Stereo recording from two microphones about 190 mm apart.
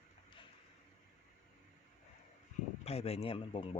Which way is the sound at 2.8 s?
30° left (ahead or behind).